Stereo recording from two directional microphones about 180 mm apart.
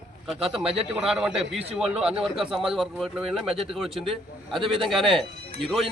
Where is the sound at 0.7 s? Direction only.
35° right (ahead or behind).